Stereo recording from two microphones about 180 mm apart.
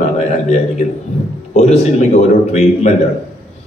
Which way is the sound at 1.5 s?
40° left (ahead or behind).